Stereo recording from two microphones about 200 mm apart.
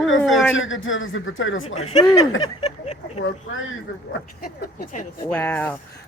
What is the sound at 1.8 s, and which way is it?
Speech, 35° left (ahead or behind).